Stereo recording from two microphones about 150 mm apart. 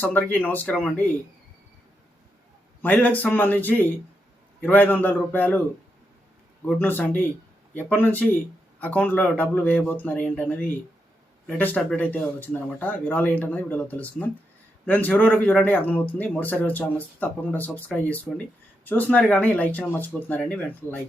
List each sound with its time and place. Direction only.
0.0 s speech: 10° left (ahead or behind)
2.8 s speech: 10° left (ahead or behind)
6.7 s speech: 15° left (ahead or behind)